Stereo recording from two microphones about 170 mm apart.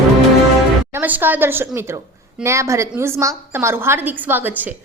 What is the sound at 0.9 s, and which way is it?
A woman's voice, 10° right (ahead or behind).